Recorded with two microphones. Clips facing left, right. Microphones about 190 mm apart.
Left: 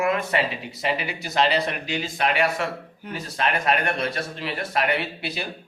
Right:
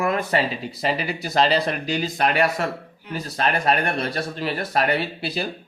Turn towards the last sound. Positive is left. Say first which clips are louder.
# right 4 dB
turn(degrees=-35)  # may be behind; listen again after turning